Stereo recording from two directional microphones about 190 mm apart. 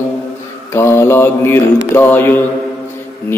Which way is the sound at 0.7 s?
15° left (ahead or behind).